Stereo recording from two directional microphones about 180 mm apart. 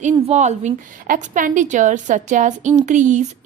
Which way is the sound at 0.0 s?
40° right (ahead or behind).